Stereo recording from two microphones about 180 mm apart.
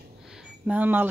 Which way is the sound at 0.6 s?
10° right (ahead or behind).